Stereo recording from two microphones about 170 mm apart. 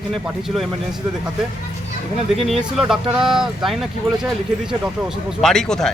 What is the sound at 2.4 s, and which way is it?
Speech, centre (ahead or behind).